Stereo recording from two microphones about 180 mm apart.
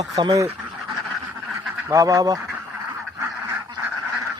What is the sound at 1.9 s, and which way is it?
Speech, 20° right (ahead or behind).